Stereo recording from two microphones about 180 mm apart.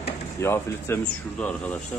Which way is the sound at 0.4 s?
15° left (ahead or behind).